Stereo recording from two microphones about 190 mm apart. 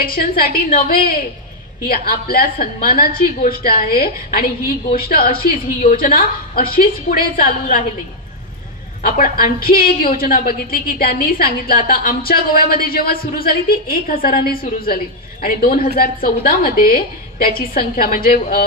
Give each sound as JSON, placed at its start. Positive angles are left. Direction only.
{"t": 0.0, "sound": "a woman's voice", "side_deg": 50}
{"t": 9.0, "sound": "a woman's voice", "side_deg": 50}